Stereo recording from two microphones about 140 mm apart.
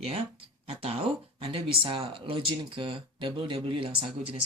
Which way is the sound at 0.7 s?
45° right (ahead or behind).